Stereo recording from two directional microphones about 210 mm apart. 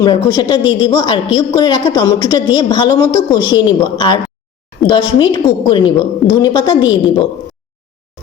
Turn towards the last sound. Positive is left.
turn(degrees=20)  # may be behind; listen again after turning